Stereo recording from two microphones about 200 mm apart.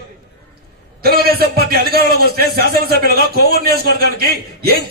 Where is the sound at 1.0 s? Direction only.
50° right (ahead or behind).